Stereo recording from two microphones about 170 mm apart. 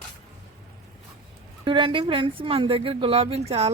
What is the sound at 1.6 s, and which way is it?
Speech, 30° right (ahead or behind).